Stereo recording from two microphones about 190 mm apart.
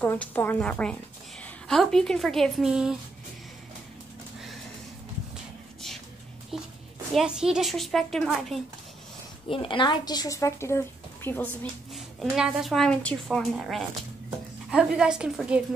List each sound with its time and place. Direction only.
0.0 s a woman's voice: 10° left (ahead or behind)
7.2 s a woman's voice: 5° right (ahead or behind)
9.5 s a woman's voice: 25° left (ahead or behind); by 11.4 s 10° left (ahead or behind)
11.9 s a woman's voice: centre (ahead or behind)